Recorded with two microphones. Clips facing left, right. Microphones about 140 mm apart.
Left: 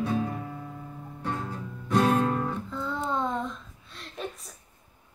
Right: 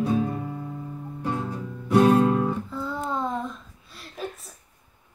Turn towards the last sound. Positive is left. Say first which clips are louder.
# right 1 dB
turn(degrees=-5)  # may be behind; listen again after turning